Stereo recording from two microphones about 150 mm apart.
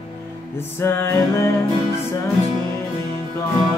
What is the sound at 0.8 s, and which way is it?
Music, 15° left (ahead or behind).